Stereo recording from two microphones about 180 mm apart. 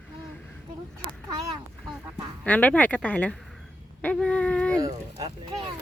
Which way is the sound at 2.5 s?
10° left (ahead or behind).